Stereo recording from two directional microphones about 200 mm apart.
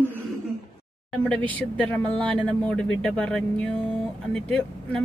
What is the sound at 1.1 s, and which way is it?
A woman's voice, 5° left (ahead or behind).